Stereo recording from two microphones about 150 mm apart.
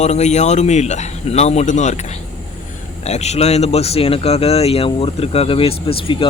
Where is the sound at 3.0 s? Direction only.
45° left (ahead or behind).